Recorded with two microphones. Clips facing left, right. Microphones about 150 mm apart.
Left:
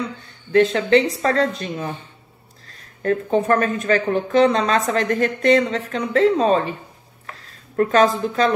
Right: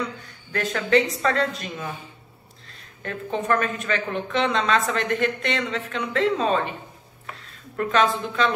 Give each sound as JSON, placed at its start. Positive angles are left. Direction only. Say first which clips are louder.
{"t": 0.5, "sound": "speech", "louder": "left 7 dB", "side_deg": 30}
{"t": 3.0, "sound": "speech", "louder": "left 9 dB", "side_deg": 40}
{"t": 7.7, "sound": "speech", "louder": "left 5 dB", "side_deg": 40}